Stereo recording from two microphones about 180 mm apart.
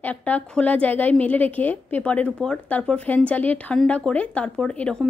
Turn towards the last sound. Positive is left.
turn(degrees=5)  # may be behind; listen again after turning